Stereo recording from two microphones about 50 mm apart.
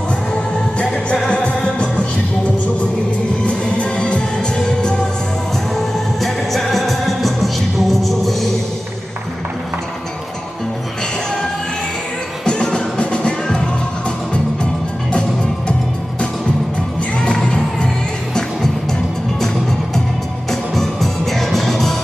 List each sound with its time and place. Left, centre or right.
0.3 s music: centre
3.4 s music: left
5.8 s music: centre
12.4 s music: centre
17.5 s music: centre
17.8 s music: centre
20.7 s music: centre